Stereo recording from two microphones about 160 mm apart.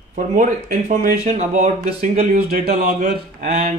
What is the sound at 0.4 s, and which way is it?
Speech, 55° right (ahead or behind).